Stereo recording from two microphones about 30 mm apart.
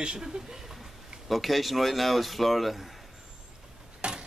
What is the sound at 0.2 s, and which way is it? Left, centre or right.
Speech, right.